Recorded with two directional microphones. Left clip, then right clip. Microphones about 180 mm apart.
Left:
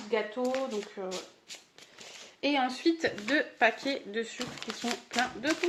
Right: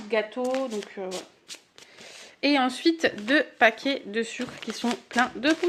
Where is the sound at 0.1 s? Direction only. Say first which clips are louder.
Right 4 dB; 60° right (ahead or behind).